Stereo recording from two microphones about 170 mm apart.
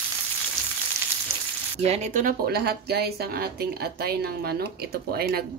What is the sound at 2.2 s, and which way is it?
Speech, 65° right (ahead or behind).